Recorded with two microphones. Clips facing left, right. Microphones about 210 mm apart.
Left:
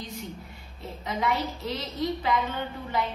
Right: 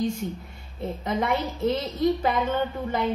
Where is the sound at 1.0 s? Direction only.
55° right (ahead or behind).